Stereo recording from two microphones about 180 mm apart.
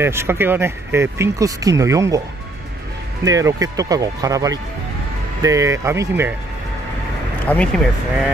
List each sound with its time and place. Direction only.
0.0 s speech: 15° right (ahead or behind)
3.3 s speech: 20° right (ahead or behind)
7.4 s speech: 5° left (ahead or behind)